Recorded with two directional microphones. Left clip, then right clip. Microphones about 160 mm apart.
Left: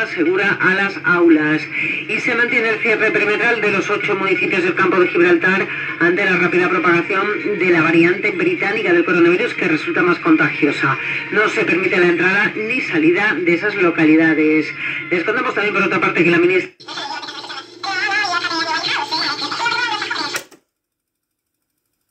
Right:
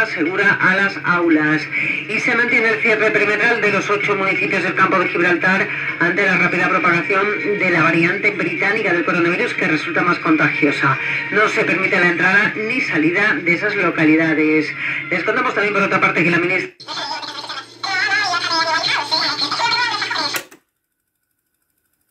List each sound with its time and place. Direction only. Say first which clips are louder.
0.0 s a man's voice: even; 35° right (ahead or behind)
17.8 s music: right 1 dB; 35° right (ahead or behind)